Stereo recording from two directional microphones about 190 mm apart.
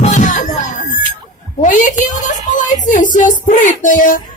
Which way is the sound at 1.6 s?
40° left (ahead or behind).